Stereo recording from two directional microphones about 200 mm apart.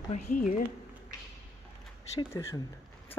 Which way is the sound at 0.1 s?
40° left (ahead or behind).